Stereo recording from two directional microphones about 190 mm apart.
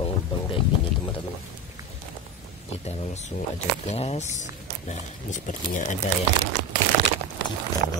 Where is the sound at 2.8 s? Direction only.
35° left (ahead or behind).